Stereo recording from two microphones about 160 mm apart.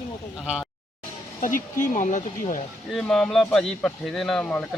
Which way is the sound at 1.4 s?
55° left (ahead or behind).